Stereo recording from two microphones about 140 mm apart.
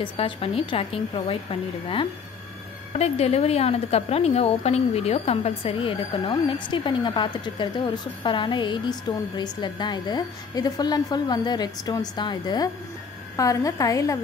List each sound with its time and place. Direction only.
0.0 s a woman's voice: 40° left (ahead or behind); by 14.1 s 25° left (ahead or behind)